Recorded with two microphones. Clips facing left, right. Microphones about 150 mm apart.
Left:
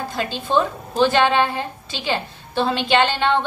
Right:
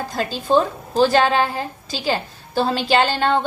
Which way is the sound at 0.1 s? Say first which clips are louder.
Right 3 dB; 40° right (ahead or behind).